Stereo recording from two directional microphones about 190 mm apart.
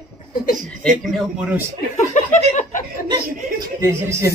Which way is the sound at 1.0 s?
Centre (ahead or behind).